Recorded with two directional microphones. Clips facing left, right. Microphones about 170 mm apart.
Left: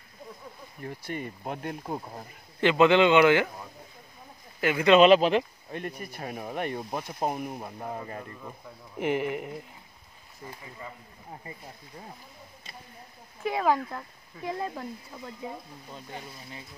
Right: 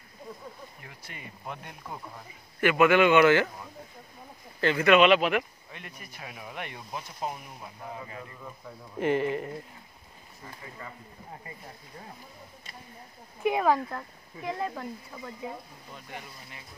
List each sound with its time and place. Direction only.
0.8 s speech: 40° left (ahead or behind)
2.6 s speech: 20° left (ahead or behind)
4.8 s speech: 30° left (ahead or behind)
5.8 s speech: 45° left (ahead or behind)
8.9 s speech: 15° left (ahead or behind)
13.6 s speech: centre (ahead or behind)
15.9 s speech: 30° left (ahead or behind)